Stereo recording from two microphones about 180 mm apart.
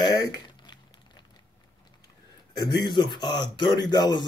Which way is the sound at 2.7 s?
25° left (ahead or behind).